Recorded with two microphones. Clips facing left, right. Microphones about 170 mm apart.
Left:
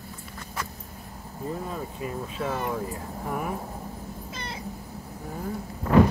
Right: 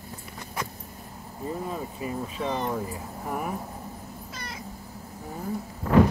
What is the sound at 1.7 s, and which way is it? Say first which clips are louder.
Speech: right 1 dB; centre (ahead or behind).